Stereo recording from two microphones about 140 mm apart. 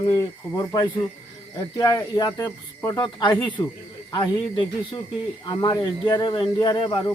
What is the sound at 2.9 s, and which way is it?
Speech, 30° left (ahead or behind).